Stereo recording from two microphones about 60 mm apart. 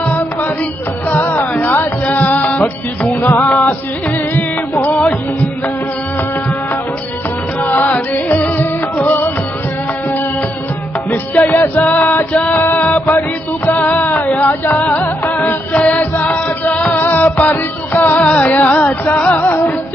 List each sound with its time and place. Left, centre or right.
1.2 s music: left
3.1 s music: left
7.6 s music: left
11.1 s music: left
14.0 s a sound: left
14.3 s music: left